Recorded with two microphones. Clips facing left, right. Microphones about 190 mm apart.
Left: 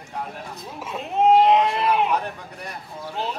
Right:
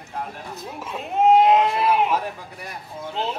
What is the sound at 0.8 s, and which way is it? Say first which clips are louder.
Speech: even; centre (ahead or behind).